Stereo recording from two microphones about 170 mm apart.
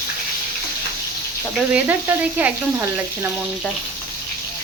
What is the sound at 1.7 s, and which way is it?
Speech, 10° right (ahead or behind).